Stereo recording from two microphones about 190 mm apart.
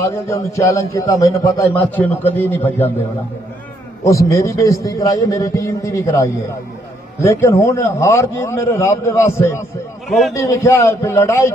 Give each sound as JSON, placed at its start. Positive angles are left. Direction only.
{"t": 0.0, "sound": "a man's voice", "side_deg": 15}
{"t": 4.0, "sound": "a man's voice", "side_deg": 15}
{"t": 7.2, "sound": "a man's voice", "side_deg": 15}